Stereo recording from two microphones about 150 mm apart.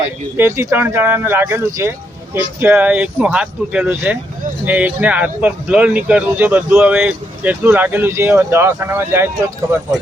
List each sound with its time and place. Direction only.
0.3 s speech: 15° right (ahead or behind)